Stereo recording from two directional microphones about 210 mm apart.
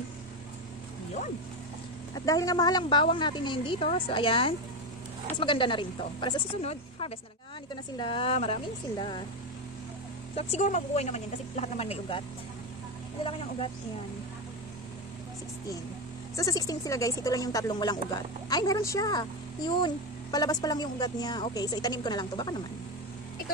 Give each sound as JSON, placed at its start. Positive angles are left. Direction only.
{"t": 2.1, "sound": "speech", "side_deg": 15}
{"t": 10.3, "sound": "a woman's voice", "side_deg": 30}
{"t": 13.2, "sound": "speech", "side_deg": 25}
{"t": 16.3, "sound": "speech", "side_deg": 15}